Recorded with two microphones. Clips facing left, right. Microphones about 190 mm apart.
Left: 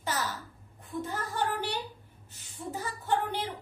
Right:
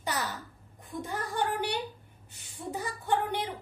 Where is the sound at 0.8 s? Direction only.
15° right (ahead or behind).